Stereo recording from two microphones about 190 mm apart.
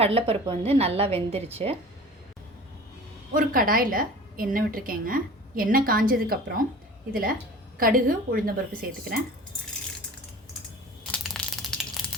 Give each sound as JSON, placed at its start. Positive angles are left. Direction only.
{"t": 0.0, "sound": "a woman's voice", "side_deg": -30}
{"t": 3.3, "sound": "a woman's voice", "side_deg": -50}
{"t": 11.1, "sound": "crushing", "side_deg": 5}